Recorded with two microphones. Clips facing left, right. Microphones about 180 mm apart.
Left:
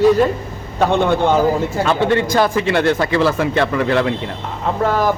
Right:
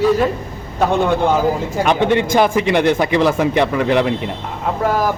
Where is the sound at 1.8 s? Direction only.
15° right (ahead or behind).